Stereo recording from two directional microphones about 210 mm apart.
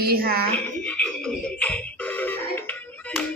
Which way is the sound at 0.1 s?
45° right (ahead or behind).